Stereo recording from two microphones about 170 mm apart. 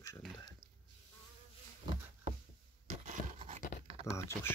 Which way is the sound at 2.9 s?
40° right (ahead or behind).